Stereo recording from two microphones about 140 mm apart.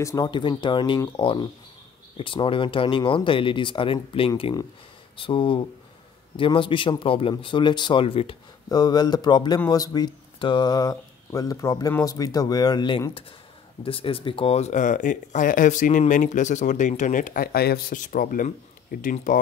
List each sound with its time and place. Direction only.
0.0 s speech: 25° left (ahead or behind)
8.6 s speech: 30° left (ahead or behind); by 19.4 s 70° left (ahead or behind)